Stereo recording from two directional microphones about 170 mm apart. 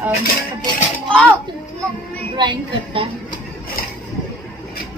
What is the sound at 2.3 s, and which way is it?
Speech, 30° right (ahead or behind).